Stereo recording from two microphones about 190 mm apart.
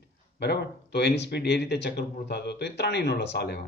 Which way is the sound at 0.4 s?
60° left (ahead or behind).